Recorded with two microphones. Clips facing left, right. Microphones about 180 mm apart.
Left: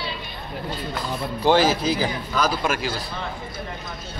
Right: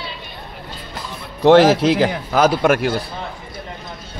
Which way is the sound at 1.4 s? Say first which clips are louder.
Right 8 dB; 80° right.